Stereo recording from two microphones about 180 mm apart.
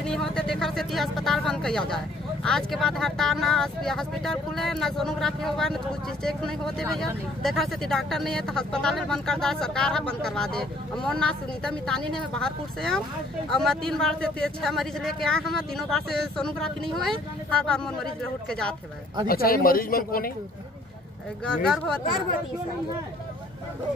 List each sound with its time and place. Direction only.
0.0 s speech: 5° left (ahead or behind)
19.2 s speech: 55° left (ahead or behind)
21.5 s speech: 5° left (ahead or behind)